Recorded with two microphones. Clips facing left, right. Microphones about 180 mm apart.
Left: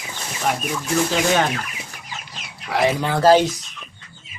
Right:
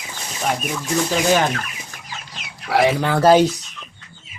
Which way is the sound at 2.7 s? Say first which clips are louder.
Right 3 dB; 75° right (ahead or behind).